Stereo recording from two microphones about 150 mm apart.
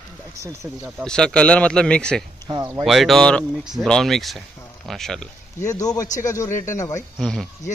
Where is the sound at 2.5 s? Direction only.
25° right (ahead or behind).